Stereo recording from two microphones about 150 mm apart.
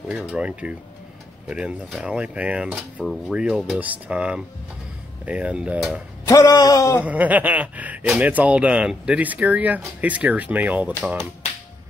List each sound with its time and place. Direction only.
0.1 s speech: 5° right (ahead or behind)
3.0 s cutlery: 5° left (ahead or behind)
3.3 s speech: 5° right (ahead or behind)
6.2 s a man's voice: 25° left (ahead or behind)
7.0 s speech: 10° right (ahead or behind)